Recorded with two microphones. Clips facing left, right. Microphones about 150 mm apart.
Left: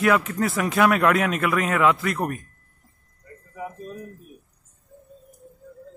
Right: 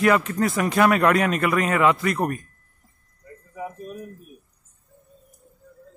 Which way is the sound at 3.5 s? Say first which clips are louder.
Right 1 dB; 15° right (ahead or behind).